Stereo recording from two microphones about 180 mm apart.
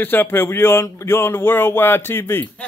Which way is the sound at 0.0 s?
10° left (ahead or behind).